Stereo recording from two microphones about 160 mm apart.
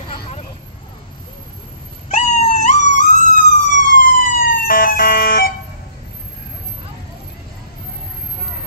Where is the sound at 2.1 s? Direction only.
45° left (ahead or behind).